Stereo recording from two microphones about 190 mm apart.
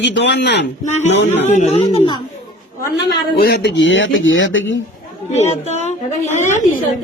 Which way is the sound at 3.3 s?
55° left (ahead or behind).